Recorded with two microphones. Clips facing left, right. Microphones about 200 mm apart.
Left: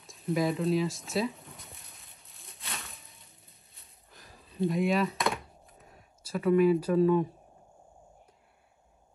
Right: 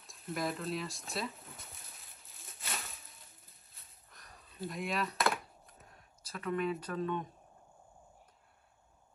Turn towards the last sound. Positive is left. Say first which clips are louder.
# left 12 dB
turn(degrees=10)  # may be behind; listen again after turning